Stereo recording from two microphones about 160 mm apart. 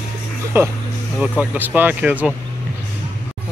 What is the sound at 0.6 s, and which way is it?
Speech, 15° right (ahead or behind).